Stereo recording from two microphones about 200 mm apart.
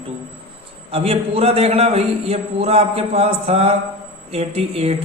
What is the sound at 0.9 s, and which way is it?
A man's voice, 30° right (ahead or behind).